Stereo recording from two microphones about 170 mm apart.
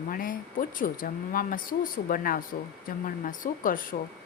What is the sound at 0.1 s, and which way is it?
A woman's voice, 55° left (ahead or behind).